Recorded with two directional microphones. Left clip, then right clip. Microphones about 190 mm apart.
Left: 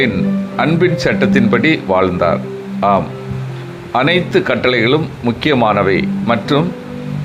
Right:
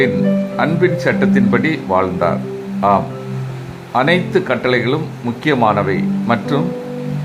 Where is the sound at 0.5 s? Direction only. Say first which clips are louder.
Left 4 dB; 20° left (ahead or behind).